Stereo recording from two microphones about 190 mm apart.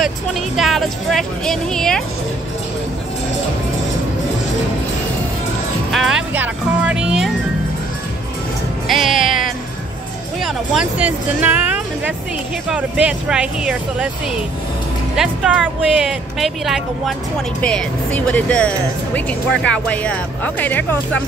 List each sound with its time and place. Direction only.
0.0 s speech: centre (ahead or behind)
5.9 s speech: centre (ahead or behind)
8.8 s music: centre (ahead or behind)
9.1 s music: 45° left (ahead or behind)
10.4 s speech: 5° right (ahead or behind)